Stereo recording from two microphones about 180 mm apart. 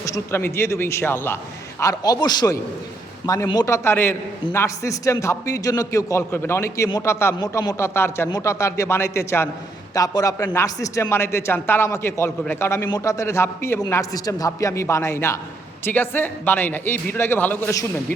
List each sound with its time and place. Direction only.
0.0 s a man's voice: 15° left (ahead or behind)